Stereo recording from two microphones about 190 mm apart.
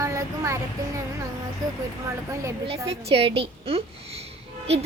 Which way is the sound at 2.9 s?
30° right (ahead or behind).